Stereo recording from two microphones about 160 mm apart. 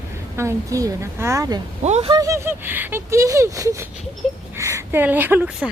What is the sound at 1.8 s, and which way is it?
Speech, 45° right (ahead or behind).